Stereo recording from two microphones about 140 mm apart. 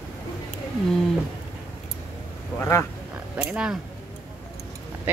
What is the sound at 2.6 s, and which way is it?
Speech, 20° left (ahead or behind).